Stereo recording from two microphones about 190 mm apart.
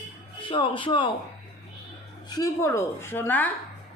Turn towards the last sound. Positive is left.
turn(degrees=10)  # may be behind; listen again after turning